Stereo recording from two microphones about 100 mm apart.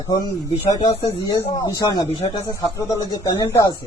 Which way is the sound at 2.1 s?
60° left (ahead or behind).